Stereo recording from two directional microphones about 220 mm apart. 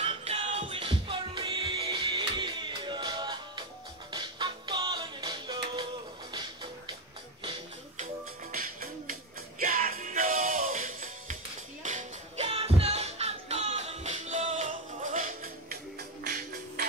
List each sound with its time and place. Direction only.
0.0 s music: 25° right (ahead or behind)
8.0 s music: 40° right (ahead or behind)